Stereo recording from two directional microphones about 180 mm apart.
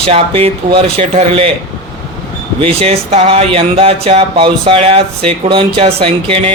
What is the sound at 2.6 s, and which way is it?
Speech, 35° right (ahead or behind).